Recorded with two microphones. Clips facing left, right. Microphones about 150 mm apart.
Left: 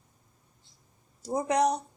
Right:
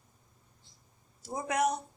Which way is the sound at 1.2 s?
35° left (ahead or behind).